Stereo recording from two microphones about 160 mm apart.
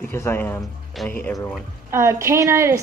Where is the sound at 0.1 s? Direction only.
15° left (ahead or behind).